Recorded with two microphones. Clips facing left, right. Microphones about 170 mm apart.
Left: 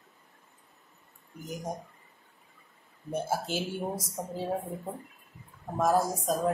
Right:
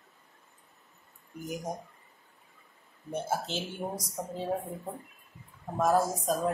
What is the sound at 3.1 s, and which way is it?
Speech, 10° left (ahead or behind).